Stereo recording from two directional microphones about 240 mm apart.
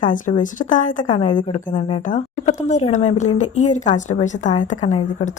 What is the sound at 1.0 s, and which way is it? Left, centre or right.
A woman's voice, centre.